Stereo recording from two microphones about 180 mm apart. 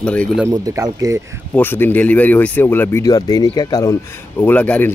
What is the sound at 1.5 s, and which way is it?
Speech, 10° left (ahead or behind).